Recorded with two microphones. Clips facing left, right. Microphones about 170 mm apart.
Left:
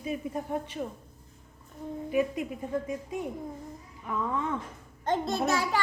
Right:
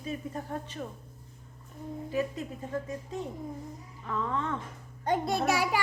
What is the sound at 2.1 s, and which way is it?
A woman's voice, 15° left (ahead or behind).